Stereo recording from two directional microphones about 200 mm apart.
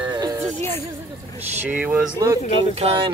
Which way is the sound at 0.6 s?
10° left (ahead or behind).